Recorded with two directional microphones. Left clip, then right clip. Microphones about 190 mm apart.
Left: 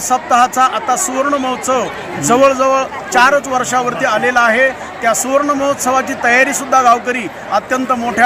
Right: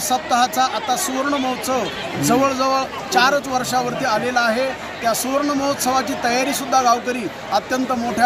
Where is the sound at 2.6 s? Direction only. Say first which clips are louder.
Left 6 dB; 5° right (ahead or behind).